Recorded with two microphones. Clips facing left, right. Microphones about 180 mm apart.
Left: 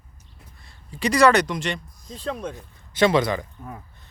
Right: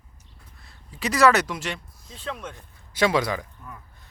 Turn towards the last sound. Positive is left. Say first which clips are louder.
# left 5 dB
turn(degrees=50)  # may be behind; listen again after turning